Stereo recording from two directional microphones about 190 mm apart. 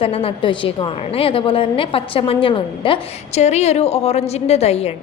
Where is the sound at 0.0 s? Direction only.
30° left (ahead or behind).